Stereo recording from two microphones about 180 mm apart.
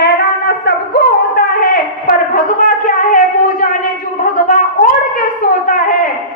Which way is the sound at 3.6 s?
50° left (ahead or behind).